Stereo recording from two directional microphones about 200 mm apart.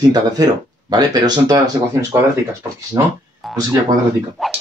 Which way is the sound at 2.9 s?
15° right (ahead or behind).